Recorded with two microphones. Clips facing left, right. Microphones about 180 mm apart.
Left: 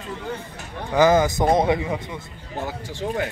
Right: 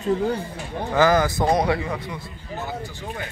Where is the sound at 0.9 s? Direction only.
20° left (ahead or behind).